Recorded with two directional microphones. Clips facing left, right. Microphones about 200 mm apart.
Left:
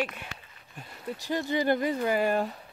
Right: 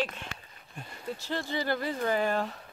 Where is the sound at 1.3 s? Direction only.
15° left (ahead or behind).